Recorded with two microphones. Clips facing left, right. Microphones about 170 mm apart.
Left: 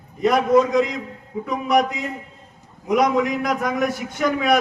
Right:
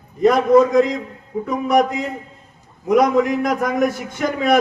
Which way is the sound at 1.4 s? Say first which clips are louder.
Right 2 dB; 50° right (ahead or behind).